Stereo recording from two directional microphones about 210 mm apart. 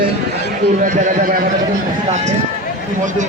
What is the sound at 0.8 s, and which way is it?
Speech, 40° right (ahead or behind).